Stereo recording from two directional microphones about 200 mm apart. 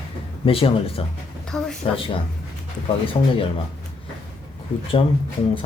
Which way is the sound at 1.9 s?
25° left (ahead or behind).